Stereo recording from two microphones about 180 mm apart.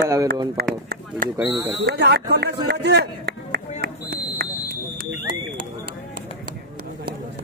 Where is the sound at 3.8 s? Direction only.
65° right (ahead or behind).